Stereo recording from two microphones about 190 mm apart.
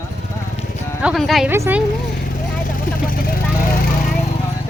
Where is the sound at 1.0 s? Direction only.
Centre (ahead or behind).